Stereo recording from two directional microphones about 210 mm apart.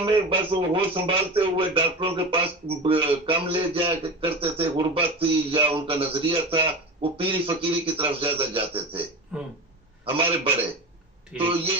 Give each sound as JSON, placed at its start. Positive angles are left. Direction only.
{"t": 0.0, "sound": "speech", "side_deg": -25}
{"t": 9.3, "sound": "speech", "side_deg": -5}
{"t": 10.1, "sound": "speech", "side_deg": -25}